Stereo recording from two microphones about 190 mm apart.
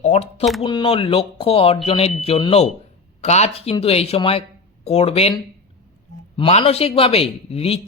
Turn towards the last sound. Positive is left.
turn(degrees=30)  # may be behind; listen again after turning